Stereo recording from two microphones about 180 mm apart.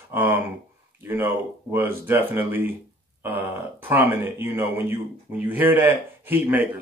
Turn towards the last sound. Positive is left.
turn(degrees=-10)  # may be behind; listen again after turning